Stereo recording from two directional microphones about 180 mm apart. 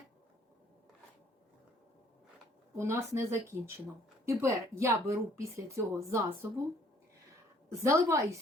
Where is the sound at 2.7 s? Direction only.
15° right (ahead or behind).